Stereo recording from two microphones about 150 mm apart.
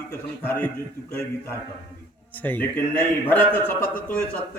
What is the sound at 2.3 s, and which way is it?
A man's voice, 10° left (ahead or behind).